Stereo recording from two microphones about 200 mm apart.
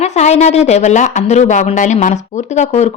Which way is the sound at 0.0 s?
35° left (ahead or behind).